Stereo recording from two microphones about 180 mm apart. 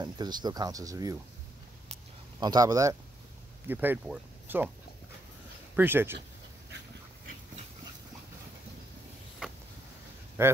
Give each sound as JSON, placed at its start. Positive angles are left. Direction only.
{"t": 0.0, "sound": "speech", "side_deg": -25}
{"t": 2.4, "sound": "speech", "side_deg": -20}
{"t": 5.8, "sound": "speech", "side_deg": -10}
{"t": 10.4, "sound": "speech", "side_deg": -15}